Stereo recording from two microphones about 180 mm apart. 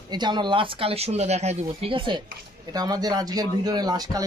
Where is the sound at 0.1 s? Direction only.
25° right (ahead or behind).